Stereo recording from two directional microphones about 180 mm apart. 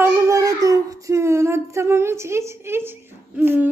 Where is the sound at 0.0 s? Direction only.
15° right (ahead or behind).